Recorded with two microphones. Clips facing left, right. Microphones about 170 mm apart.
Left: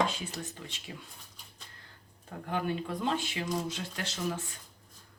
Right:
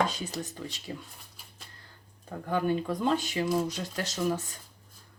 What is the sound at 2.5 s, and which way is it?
Speech, 40° right (ahead or behind).